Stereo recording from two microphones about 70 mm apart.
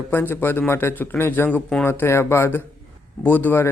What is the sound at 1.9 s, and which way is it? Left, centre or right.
Speech, left.